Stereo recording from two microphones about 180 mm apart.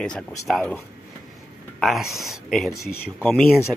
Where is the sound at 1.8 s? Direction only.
Centre (ahead or behind).